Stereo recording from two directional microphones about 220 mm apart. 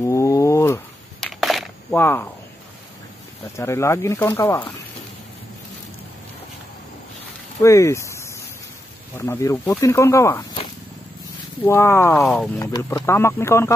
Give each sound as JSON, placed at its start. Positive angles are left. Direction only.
{"t": 0.0, "sound": "wild animals", "side_deg": 15}
{"t": 1.2, "sound": "coin", "side_deg": 0}
{"t": 3.5, "sound": "speech", "side_deg": 10}
{"t": 7.6, "sound": "speech", "side_deg": 15}